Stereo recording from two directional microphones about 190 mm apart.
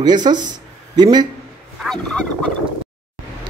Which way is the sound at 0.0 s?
20° right (ahead or behind).